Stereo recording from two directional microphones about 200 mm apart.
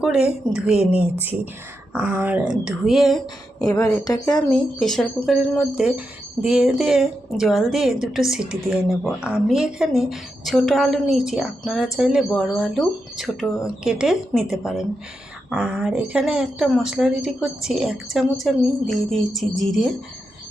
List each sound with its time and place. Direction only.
0.0 s a woman's voice: 5° right (ahead or behind)
3.6 s a woman's voice: 20° left (ahead or behind)
4.5 s a woman's voice: centre (ahead or behind)